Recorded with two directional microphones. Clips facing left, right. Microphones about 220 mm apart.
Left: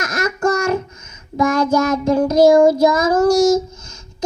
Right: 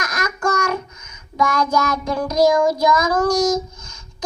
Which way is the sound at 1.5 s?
30° left (ahead or behind).